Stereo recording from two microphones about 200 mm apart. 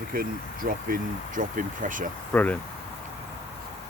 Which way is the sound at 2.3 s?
10° left (ahead or behind).